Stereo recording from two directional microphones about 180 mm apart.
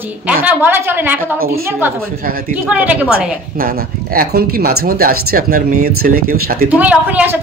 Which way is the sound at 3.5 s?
55° right (ahead or behind).